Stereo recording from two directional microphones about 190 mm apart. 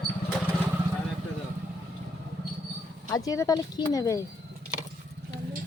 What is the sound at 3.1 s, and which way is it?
Speech, 15° left (ahead or behind).